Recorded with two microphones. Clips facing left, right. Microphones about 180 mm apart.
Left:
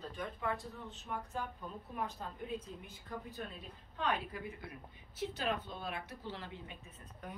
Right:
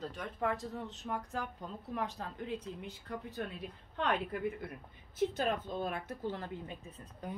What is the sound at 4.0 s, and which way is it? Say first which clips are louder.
A woman's voice: right 4 dB; 60° right (ahead or behind).